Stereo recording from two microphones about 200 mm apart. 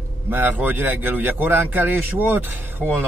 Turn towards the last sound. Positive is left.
turn(degrees=-10)  # may be behind; listen again after turning